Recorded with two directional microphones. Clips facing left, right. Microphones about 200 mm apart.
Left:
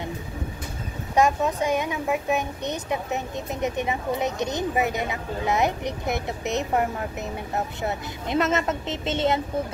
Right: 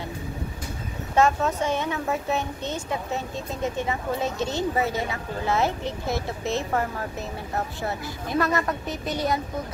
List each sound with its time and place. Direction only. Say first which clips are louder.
1.1 s a woman's voice: even; 15° left (ahead or behind)